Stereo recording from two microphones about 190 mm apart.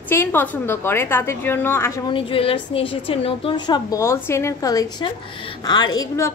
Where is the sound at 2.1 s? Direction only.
30° left (ahead or behind).